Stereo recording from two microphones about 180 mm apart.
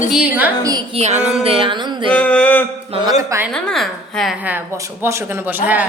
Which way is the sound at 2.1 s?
5° left (ahead or behind).